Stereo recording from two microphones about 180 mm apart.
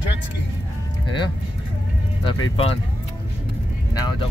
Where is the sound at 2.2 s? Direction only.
30° left (ahead or behind).